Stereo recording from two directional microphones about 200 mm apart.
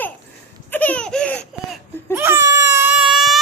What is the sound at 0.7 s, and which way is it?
Baby laughter, 10° left (ahead or behind).